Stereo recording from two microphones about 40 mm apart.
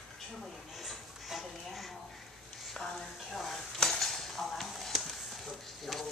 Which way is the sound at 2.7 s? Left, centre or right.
Centre.